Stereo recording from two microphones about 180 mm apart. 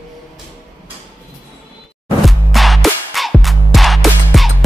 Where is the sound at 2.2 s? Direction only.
Centre (ahead or behind).